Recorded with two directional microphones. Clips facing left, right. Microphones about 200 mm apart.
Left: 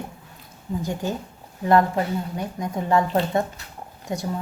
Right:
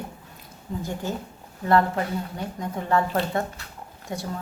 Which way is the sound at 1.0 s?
15° left (ahead or behind).